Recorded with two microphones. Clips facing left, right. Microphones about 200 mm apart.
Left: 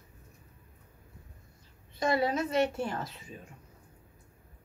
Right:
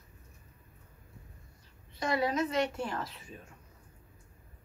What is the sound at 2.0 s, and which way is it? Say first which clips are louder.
A woman's voice: left 2 dB; 30° left (ahead or behind).